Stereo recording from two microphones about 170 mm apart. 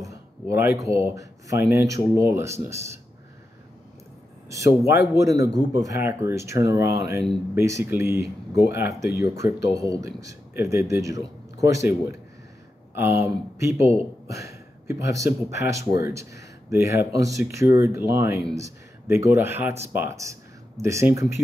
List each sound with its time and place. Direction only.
0.0 s speech: 20° right (ahead or behind)
4.8 s speech: 15° right (ahead or behind)
13.6 s speech: 15° right (ahead or behind)
14.2 s a sound: 20° right (ahead or behind)
15.0 s speech: 15° right (ahead or behind)